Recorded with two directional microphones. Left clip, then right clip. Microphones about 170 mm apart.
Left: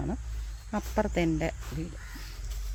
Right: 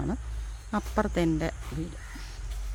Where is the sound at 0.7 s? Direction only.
Centre (ahead or behind).